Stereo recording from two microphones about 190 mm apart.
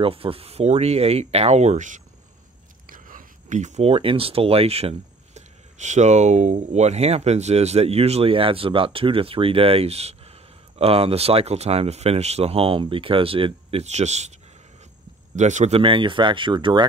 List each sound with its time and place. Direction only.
0.0 s speech: 30° right (ahead or behind)
15.3 s speech: 40° right (ahead or behind)